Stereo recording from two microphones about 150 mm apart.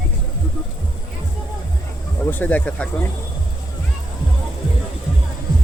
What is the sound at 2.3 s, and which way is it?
Speech, 10° left (ahead or behind).